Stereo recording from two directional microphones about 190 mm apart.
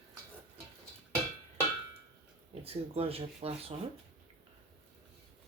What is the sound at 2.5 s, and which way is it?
Speech, 30° right (ahead or behind).